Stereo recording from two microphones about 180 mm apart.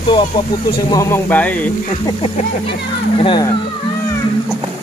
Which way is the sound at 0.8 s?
15° left (ahead or behind).